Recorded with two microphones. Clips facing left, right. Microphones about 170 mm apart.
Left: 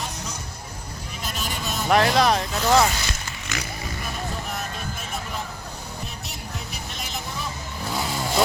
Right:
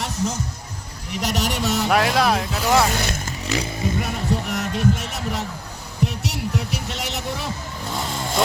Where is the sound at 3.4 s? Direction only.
30° right (ahead or behind).